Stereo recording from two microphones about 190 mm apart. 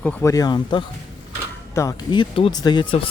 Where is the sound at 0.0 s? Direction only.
10° left (ahead or behind).